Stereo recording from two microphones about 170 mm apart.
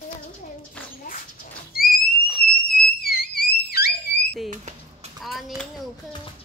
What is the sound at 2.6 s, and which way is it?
Theremin, 65° left (ahead or behind).